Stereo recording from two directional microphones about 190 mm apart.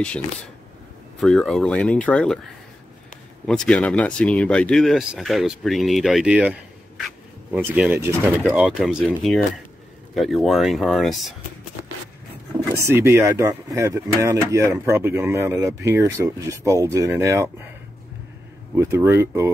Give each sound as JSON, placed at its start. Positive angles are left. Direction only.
{"t": 1.2, "sound": "speech", "side_deg": 0}
{"t": 3.4, "sound": "speech", "side_deg": 5}
{"t": 12.8, "sound": "speech", "side_deg": -15}
{"t": 18.8, "sound": "speech", "side_deg": -15}